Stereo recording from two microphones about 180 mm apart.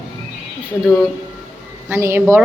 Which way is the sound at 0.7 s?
10° left (ahead or behind).